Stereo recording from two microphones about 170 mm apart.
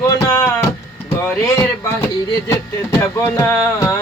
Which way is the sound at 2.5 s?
15° left (ahead or behind).